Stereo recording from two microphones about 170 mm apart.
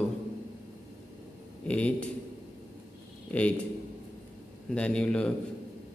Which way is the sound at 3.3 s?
5° left (ahead or behind).